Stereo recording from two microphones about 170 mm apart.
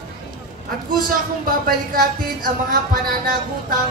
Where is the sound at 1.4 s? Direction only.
60° right (ahead or behind).